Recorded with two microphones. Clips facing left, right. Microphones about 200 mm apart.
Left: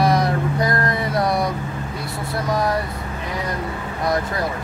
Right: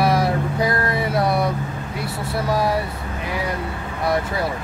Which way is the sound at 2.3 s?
5° right (ahead or behind).